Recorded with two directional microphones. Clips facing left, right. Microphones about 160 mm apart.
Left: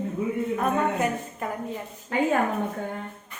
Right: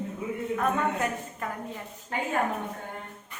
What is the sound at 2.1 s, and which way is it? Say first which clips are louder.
Speech: left 8 dB; 90° left.